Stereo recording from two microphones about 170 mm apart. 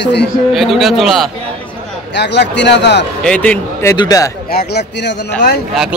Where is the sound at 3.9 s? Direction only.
20° left (ahead or behind).